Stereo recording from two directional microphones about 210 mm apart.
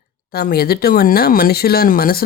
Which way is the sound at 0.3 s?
45° left (ahead or behind).